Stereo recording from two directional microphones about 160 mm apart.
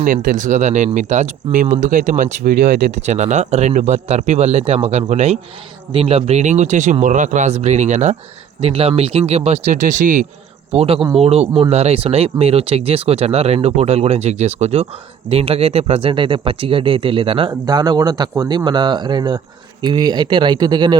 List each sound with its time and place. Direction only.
0.0 s speech: 55° right (ahead or behind)
2.4 s speech: 75° right (ahead or behind)
3.1 s speech: 45° right (ahead or behind)
10.7 s speech: 40° right (ahead or behind)